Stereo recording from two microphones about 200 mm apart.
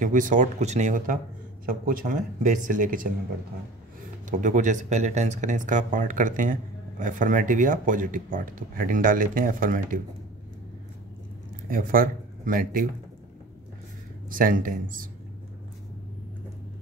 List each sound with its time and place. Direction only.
0.0 s speech: 40° right (ahead or behind)
4.3 s speech: 40° right (ahead or behind)
11.7 s speech: 45° right (ahead or behind)
14.3 s speech: 45° right (ahead or behind)